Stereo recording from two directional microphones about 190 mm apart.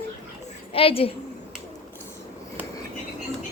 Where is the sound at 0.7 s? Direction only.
30° left (ahead or behind).